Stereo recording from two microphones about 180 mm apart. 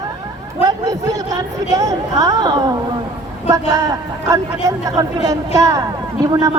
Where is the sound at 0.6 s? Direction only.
20° right (ahead or behind).